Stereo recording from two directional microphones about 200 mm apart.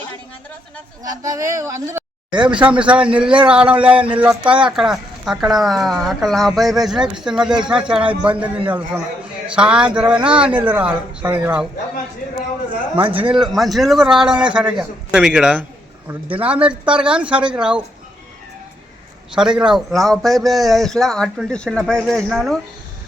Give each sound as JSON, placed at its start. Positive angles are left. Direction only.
{"t": 1.0, "sound": "a woman's voice", "side_deg": -15}
{"t": 13.2, "sound": "a man's voice", "side_deg": 0}
{"t": 19.3, "sound": "a man's voice", "side_deg": -5}